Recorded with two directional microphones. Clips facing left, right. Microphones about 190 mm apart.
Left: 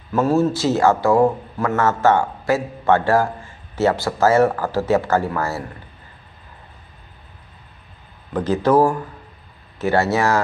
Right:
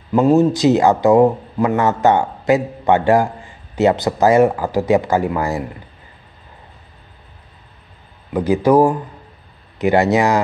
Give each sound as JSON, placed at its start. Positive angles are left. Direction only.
{"t": 0.1, "sound": "a man's voice", "side_deg": -15}
{"t": 8.3, "sound": "a man's voice", "side_deg": -10}